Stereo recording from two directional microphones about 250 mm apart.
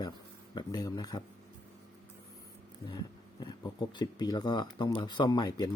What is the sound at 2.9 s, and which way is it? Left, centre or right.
Speech, centre.